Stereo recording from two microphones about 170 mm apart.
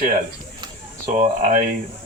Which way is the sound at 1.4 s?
50° right (ahead or behind).